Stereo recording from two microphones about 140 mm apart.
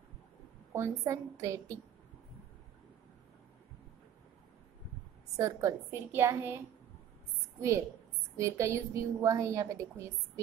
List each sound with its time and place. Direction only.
0.7 s a woman's voice: 20° right (ahead or behind)
5.4 s a woman's voice: 20° right (ahead or behind)
8.4 s a woman's voice: 20° right (ahead or behind)